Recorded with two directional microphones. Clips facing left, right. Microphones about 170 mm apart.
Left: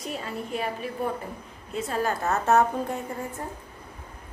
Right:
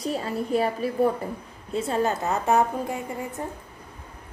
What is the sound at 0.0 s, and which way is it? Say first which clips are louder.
A woman's voice: right 5 dB; 35° right (ahead or behind).